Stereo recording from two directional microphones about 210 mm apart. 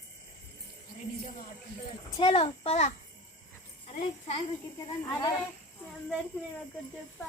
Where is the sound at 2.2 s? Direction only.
25° left (ahead or behind).